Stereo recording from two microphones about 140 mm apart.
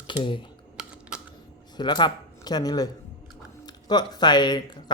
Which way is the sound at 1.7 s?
30° left (ahead or behind).